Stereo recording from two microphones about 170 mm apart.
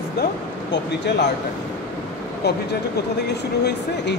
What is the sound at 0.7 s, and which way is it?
Speech, 90° left.